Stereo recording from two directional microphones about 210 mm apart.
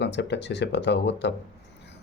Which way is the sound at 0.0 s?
55° left (ahead or behind).